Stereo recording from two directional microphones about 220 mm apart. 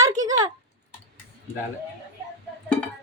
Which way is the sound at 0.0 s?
15° right (ahead or behind).